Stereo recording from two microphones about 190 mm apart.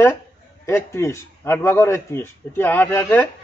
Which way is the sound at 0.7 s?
15° left (ahead or behind).